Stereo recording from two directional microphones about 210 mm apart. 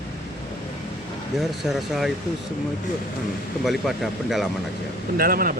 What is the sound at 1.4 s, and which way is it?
Speech, centre (ahead or behind).